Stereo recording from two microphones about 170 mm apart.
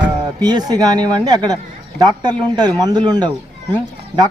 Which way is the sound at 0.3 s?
25° right (ahead or behind).